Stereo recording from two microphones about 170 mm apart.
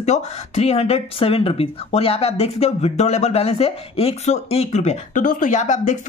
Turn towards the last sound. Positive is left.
turn(degrees=45)  # may be behind; listen again after turning